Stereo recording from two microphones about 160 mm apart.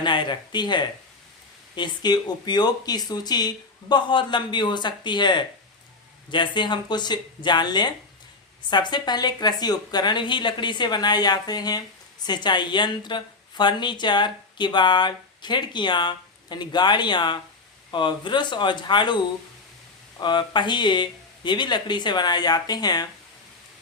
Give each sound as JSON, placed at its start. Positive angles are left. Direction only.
{"t": 0.0, "sound": "a woman's voice", "side_deg": 30}
{"t": 20.2, "sound": "a woman's voice", "side_deg": 30}